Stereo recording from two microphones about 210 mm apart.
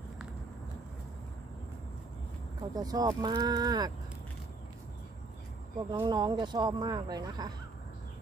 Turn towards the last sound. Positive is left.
turn(degrees=-20)  # may be behind; listen again after turning